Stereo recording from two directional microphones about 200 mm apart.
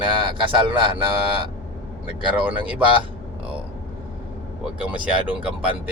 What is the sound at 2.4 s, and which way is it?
Speech, 10° right (ahead or behind).